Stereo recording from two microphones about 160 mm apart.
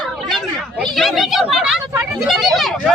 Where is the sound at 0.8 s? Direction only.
Centre (ahead or behind).